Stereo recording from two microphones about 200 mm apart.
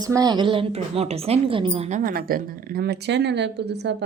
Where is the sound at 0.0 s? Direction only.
20° right (ahead or behind).